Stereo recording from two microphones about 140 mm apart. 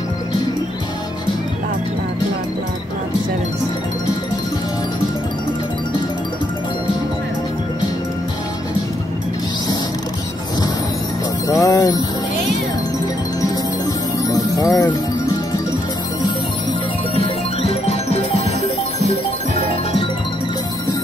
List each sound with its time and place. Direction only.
11.4 s music: 25° left (ahead or behind)
14.3 s music: 25° left (ahead or behind)
17.1 s music: 40° left (ahead or behind)